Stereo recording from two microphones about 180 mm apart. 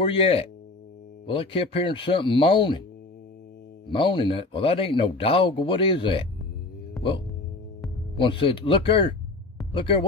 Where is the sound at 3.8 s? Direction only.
25° left (ahead or behind).